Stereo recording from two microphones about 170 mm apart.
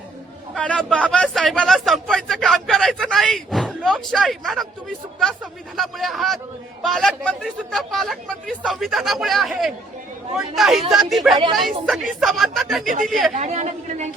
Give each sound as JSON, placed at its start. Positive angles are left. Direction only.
{"t": 0.5, "sound": "speech", "side_deg": 5}
{"t": 13.3, "sound": "a woman's voice", "side_deg": -40}